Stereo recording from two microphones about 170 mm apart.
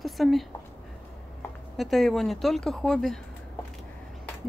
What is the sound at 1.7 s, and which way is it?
Speech, centre (ahead or behind).